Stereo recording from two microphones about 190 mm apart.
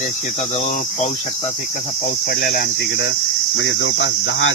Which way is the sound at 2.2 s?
55° left (ahead or behind).